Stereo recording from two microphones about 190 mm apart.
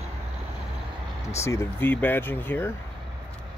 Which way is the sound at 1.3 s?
15° left (ahead or behind).